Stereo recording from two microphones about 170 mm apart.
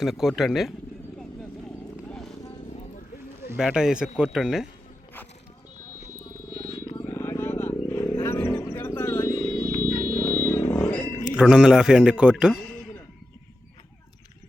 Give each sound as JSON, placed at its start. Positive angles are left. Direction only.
{"t": 0.0, "sound": "a man's voice", "side_deg": 0}
{"t": 1.7, "sound": "horse", "side_deg": 5}
{"t": 3.6, "sound": "a man's voice", "side_deg": -5}
{"t": 7.1, "sound": "vehicle", "side_deg": 15}
{"t": 9.8, "sound": "a sound", "side_deg": -20}
{"t": 10.2, "sound": "vehicle", "side_deg": 15}
{"t": 11.3, "sound": "a man's voice", "side_deg": -5}